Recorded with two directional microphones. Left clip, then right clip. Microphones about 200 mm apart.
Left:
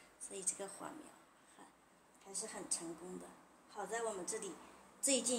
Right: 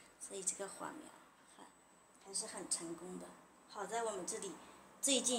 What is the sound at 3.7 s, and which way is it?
Speech, 10° right (ahead or behind).